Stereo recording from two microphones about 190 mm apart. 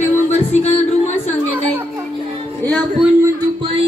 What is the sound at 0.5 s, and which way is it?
Speech, 35° left (ahead or behind).